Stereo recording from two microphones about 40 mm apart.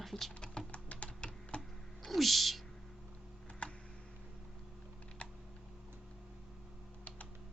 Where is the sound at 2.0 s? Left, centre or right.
Centre.